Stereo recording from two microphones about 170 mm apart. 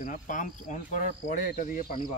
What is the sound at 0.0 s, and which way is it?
Speech, 50° left (ahead or behind).